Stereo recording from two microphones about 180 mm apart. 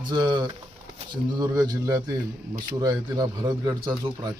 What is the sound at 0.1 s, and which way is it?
A man's voice, 25° right (ahead or behind).